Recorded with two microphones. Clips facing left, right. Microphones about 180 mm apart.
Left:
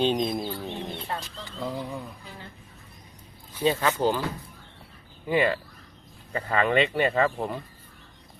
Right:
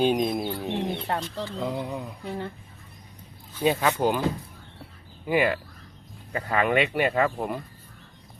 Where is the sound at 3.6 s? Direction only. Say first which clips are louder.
Right 1 dB; 15° right (ahead or behind).